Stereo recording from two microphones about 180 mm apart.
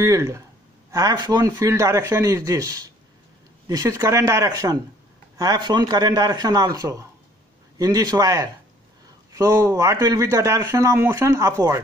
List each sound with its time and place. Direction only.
0.0 s speech: 15° right (ahead or behind)